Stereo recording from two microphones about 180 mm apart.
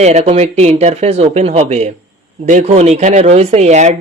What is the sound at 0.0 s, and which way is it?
Speech, 40° right (ahead or behind).